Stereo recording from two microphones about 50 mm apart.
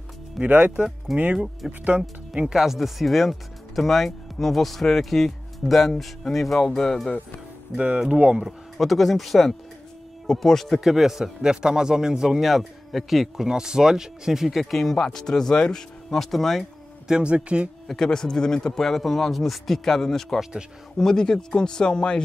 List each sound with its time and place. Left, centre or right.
0.4 s speech: right
1.1 s speech: right; by 7.1 s centre
7.7 s speech: right
8.7 s speech: centre
10.8 s a man's voice: centre
13.5 s a man's voice: centre
17.1 s speech: right
17.8 s speech: centre